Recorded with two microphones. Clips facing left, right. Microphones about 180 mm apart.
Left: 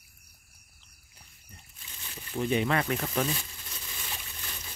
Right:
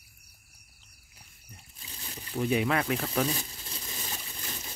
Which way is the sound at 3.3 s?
35° right (ahead or behind).